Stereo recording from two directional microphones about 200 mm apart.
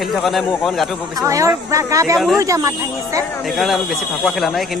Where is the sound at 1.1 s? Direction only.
15° right (ahead or behind).